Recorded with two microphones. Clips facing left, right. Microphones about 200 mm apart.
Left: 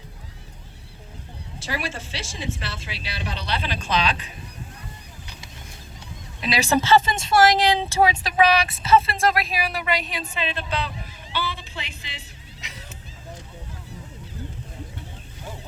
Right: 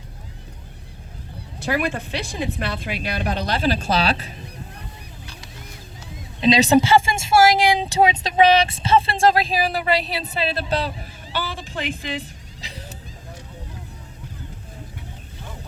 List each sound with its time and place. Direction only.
1.6 s speech: 60° right (ahead or behind); by 4.3 s 40° right (ahead or behind)
6.4 s speech: 20° right (ahead or behind); by 12.2 s 50° right (ahead or behind)
12.6 s vehicle: 35° right (ahead or behind)